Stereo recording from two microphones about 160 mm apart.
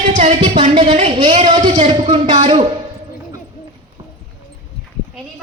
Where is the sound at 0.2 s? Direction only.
40° right (ahead or behind).